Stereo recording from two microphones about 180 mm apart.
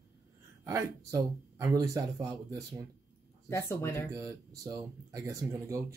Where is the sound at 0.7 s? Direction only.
15° right (ahead or behind).